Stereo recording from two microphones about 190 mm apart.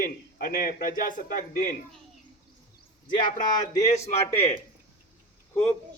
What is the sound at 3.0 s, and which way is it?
A man's voice, 20° left (ahead or behind).